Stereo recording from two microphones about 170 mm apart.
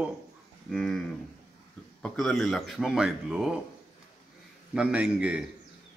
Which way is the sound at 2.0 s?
Centre (ahead or behind).